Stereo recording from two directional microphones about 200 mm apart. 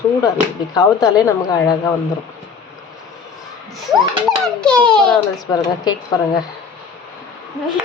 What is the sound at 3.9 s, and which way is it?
A child's voice, centre (ahead or behind).